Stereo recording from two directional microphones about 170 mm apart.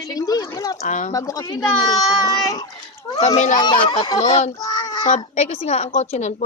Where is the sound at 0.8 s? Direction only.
45° left (ahead or behind).